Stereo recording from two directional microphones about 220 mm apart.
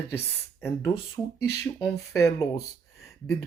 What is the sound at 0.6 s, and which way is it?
Speech, 15° left (ahead or behind).